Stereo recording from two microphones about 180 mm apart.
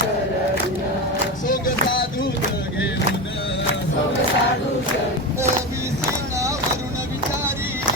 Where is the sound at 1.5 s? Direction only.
50° left (ahead or behind).